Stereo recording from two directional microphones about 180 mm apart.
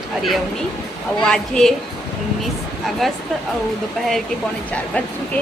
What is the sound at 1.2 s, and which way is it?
Speech, 5° left (ahead or behind).